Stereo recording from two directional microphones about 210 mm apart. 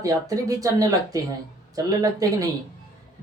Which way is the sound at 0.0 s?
15° right (ahead or behind).